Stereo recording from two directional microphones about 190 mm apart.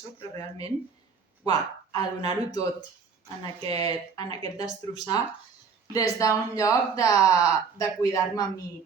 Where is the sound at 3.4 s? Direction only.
20° left (ahead or behind).